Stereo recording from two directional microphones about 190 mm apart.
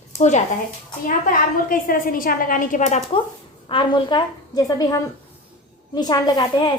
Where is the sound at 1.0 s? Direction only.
45° left (ahead or behind).